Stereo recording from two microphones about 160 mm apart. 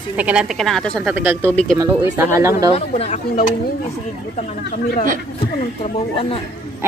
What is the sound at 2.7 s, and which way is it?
Speech, 45° left (ahead or behind).